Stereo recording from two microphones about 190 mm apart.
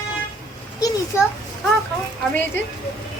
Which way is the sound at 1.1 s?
15° left (ahead or behind).